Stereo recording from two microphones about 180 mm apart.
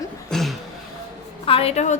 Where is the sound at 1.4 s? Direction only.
30° left (ahead or behind).